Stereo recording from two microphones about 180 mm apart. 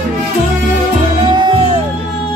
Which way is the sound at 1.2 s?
25° right (ahead or behind).